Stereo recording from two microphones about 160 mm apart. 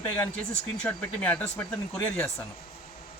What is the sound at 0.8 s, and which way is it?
Speech, 10° left (ahead or behind).